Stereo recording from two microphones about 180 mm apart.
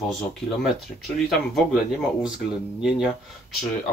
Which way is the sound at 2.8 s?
5° right (ahead or behind).